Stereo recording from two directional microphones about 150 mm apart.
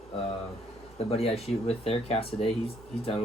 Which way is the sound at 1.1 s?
45° left (ahead or behind).